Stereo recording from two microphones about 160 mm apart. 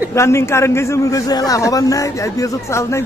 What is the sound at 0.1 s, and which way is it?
A man's voice, 15° left (ahead or behind).